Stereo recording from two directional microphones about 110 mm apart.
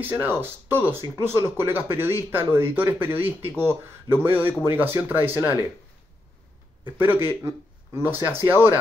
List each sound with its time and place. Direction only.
0.0 s speech: 20° right (ahead or behind)
7.0 s a man's voice: 20° right (ahead or behind)